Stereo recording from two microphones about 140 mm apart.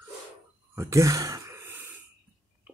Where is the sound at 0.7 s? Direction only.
20° right (ahead or behind).